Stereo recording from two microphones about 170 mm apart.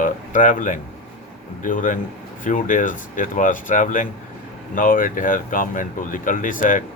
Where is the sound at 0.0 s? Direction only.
50° left (ahead or behind).